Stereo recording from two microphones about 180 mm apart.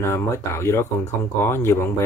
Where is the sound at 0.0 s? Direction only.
15° left (ahead or behind).